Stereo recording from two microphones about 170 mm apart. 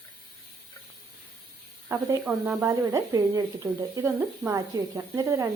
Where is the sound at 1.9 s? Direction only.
10° right (ahead or behind).